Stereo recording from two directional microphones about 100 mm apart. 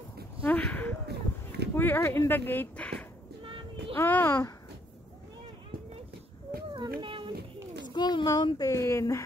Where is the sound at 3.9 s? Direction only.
20° left (ahead or behind).